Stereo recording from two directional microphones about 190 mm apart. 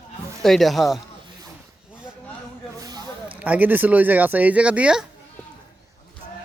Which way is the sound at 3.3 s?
10° right (ahead or behind).